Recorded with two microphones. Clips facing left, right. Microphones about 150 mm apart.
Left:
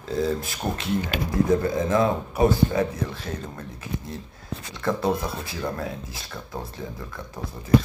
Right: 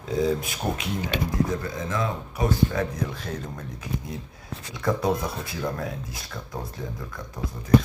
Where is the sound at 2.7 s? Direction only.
5° left (ahead or behind).